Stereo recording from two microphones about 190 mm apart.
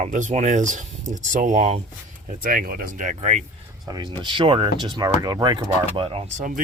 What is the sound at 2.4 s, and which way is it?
Speech, 50° right (ahead or behind).